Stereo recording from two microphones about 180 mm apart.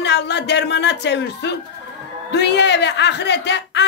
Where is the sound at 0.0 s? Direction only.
70° left (ahead or behind).